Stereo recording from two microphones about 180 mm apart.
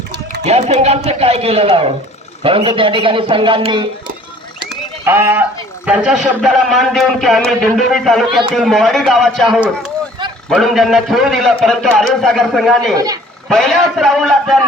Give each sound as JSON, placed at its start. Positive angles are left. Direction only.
{"t": 0.4, "sound": "a man's voice", "side_deg": -35}
{"t": 5.0, "sound": "a man's voice", "side_deg": -10}